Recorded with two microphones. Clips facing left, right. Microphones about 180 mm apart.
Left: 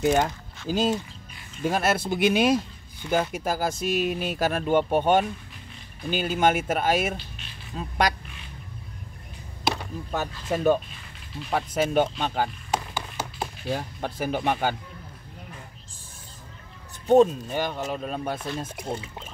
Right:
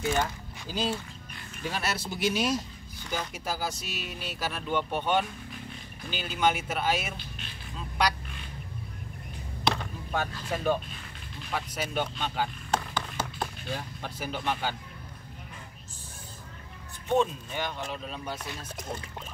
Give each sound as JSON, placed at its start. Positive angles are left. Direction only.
{"t": 0.1, "sound": "speech", "side_deg": 45}
{"t": 10.5, "sound": "speech", "side_deg": 45}
{"t": 12.7, "sound": "a sound", "side_deg": 10}
{"t": 13.7, "sound": "speech", "side_deg": 50}
{"t": 17.1, "sound": "speech", "side_deg": 40}